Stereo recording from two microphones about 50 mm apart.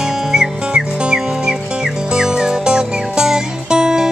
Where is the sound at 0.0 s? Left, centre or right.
Centre.